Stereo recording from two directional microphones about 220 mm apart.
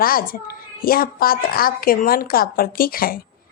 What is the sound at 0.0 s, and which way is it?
A woman's voice, 40° left (ahead or behind).